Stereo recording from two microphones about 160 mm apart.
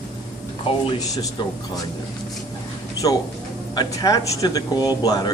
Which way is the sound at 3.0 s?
25° left (ahead or behind).